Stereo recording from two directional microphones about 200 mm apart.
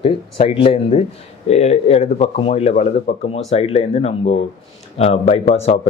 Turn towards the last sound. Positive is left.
turn(degrees=30)  # may be behind; listen again after turning